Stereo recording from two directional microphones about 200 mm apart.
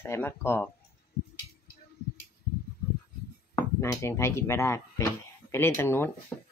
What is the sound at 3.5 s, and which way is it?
Speech, 15° left (ahead or behind).